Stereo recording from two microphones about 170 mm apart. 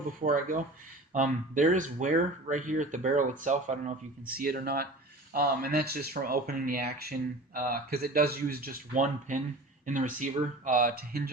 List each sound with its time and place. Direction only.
0.2 s speech: 50° right (ahead or behind)